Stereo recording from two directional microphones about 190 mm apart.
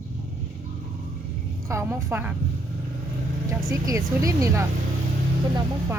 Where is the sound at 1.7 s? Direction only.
15° right (ahead or behind).